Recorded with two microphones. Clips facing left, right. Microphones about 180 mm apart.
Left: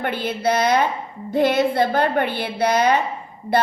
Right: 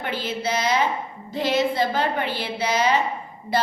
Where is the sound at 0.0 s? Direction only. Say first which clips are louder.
Left 5 dB; 55° left (ahead or behind).